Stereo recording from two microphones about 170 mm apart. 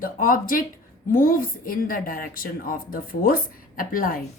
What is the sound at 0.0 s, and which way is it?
A woman's voice, 55° left (ahead or behind).